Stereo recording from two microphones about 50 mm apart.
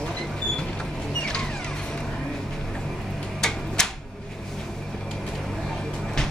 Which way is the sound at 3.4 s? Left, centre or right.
Centre.